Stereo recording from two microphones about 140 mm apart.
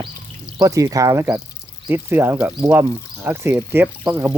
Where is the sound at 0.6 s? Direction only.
25° right (ahead or behind).